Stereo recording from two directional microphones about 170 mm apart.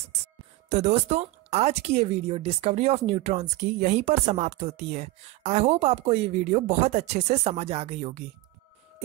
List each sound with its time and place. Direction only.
0.7 s a woman's voice: 40° right (ahead or behind)